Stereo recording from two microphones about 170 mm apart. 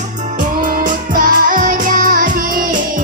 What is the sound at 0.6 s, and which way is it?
Music, 55° right (ahead or behind).